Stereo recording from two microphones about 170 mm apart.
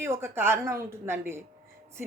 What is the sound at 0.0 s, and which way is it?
Speech, 15° right (ahead or behind).